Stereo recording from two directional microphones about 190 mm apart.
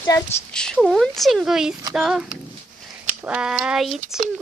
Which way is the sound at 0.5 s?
5° left (ahead or behind).